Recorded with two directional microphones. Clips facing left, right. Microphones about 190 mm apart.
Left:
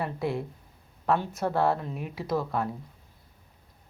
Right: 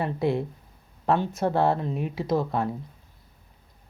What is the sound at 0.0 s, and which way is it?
Speech, 25° right (ahead or behind).